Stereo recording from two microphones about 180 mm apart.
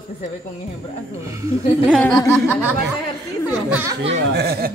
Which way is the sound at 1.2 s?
15° right (ahead or behind).